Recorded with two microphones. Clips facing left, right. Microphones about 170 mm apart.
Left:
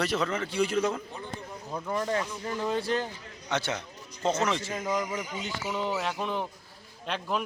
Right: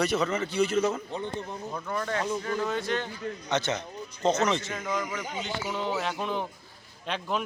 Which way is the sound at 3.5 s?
10° left (ahead or behind).